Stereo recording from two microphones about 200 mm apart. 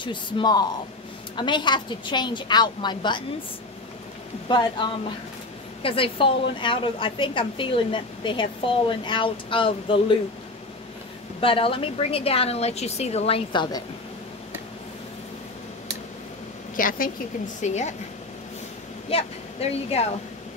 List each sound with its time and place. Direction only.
0.0 s a woman's voice: 25° left (ahead or behind)
4.5 s a woman's voice: 25° left (ahead or behind)
11.4 s a woman's voice: 25° left (ahead or behind)
16.7 s speech: 45° left (ahead or behind)
19.1 s speech: 30° left (ahead or behind)